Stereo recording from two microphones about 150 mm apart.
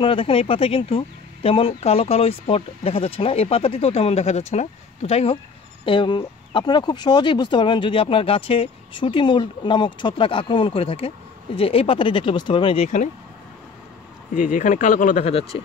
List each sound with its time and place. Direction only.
0.0 s speech: 35° left (ahead or behind)
14.3 s speech: 60° left (ahead or behind)
15.2 s speech: 40° left (ahead or behind)